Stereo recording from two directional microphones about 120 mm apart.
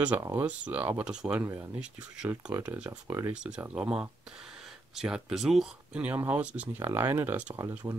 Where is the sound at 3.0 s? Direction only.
25° right (ahead or behind).